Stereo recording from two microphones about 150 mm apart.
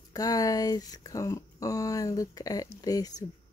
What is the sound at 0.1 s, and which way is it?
Speech, 25° left (ahead or behind).